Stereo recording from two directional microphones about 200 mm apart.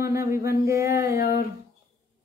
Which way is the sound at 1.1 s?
50° left (ahead or behind).